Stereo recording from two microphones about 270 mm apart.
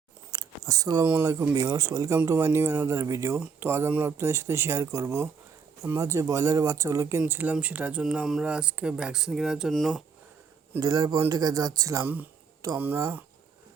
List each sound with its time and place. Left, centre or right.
0.3 s a sound: centre
0.7 s speech: centre
10.8 s speech: centre